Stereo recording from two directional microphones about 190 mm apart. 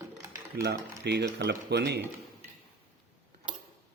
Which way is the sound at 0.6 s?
65° right (ahead or behind).